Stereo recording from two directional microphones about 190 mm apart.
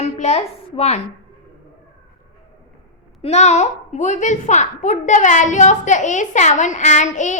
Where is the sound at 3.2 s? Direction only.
35° left (ahead or behind).